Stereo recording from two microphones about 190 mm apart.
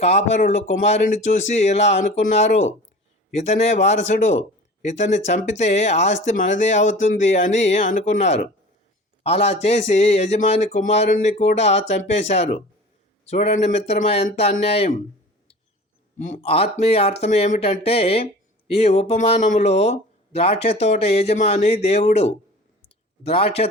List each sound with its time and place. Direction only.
0.0 s speech: 35° left (ahead or behind)
16.1 s speech: 40° left (ahead or behind)